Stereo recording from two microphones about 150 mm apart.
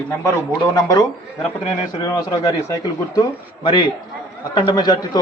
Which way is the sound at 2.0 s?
25° left (ahead or behind).